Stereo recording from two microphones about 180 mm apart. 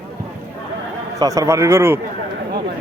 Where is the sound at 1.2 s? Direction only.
20° right (ahead or behind).